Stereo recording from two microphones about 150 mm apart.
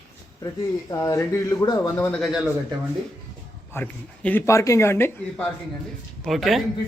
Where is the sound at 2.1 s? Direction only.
Centre (ahead or behind).